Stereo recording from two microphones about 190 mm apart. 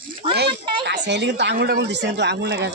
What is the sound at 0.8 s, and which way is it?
Speech, 65° right (ahead or behind).